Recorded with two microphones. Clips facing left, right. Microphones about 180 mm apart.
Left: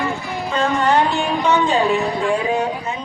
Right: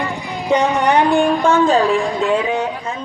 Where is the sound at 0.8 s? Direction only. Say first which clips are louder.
Right 3 dB; 60° right (ahead or behind).